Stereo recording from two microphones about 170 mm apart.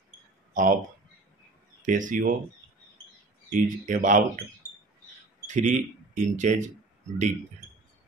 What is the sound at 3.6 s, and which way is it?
Speech, 50° right (ahead or behind).